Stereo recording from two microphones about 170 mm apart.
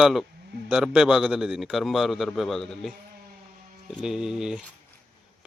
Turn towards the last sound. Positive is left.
turn(degrees=-5)  # may be behind; listen again after turning